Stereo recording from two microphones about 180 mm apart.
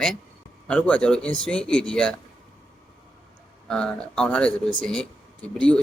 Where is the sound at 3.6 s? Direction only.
5° left (ahead or behind).